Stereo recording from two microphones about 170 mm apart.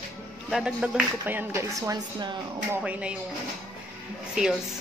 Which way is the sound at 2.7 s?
10° right (ahead or behind).